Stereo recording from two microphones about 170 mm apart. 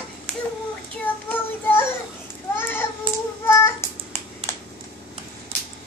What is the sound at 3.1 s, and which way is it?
Child singing, 30° right (ahead or behind).